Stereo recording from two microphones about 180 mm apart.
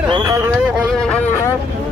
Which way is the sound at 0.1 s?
20° right (ahead or behind).